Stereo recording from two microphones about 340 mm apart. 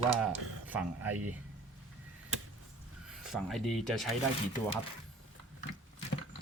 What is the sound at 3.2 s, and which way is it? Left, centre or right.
Speech, centre.